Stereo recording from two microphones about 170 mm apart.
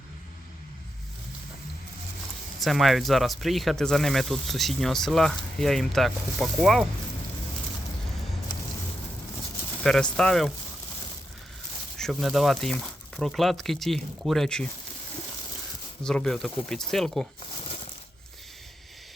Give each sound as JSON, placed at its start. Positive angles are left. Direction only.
{"t": 2.6, "sound": "speech", "side_deg": 0}
{"t": 9.8, "sound": "speech", "side_deg": 5}
{"t": 11.9, "sound": "speech", "side_deg": 0}
{"t": 16.0, "sound": "speech", "side_deg": 5}